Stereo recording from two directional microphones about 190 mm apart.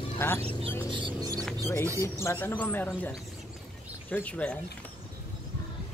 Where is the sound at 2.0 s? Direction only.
15° left (ahead or behind).